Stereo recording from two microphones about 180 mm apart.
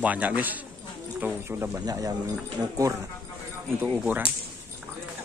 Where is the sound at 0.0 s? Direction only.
10° right (ahead or behind).